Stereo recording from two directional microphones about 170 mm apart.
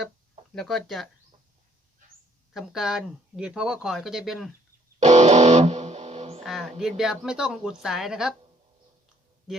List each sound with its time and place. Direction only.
0.5 s speech: centre (ahead or behind)
2.5 s speech: centre (ahead or behind)
4.9 s music: 40° right (ahead or behind)
6.4 s speech: centre (ahead or behind)
9.5 s speech: 5° right (ahead or behind)